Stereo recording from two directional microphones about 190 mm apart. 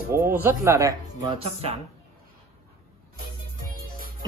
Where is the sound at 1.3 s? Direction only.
30° right (ahead or behind).